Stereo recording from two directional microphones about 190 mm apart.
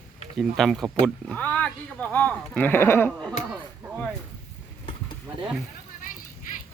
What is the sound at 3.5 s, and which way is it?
Speech, centre (ahead or behind).